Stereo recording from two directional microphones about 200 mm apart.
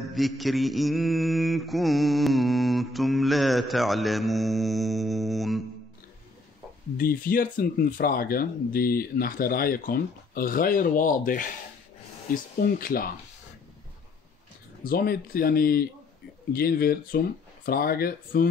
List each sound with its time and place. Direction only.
0.0 s mantra: centre (ahead or behind)
7.0 s speech: 45° left (ahead or behind)
14.8 s speech: 45° left (ahead or behind)